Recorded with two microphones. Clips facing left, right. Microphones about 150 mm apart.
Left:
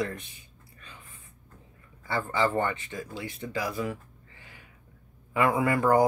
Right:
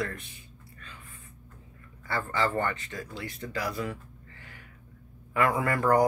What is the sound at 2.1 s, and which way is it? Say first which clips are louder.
Speech: left 2 dB; 15° left (ahead or behind).